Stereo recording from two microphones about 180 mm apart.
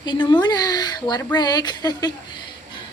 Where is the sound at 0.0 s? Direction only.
25° left (ahead or behind).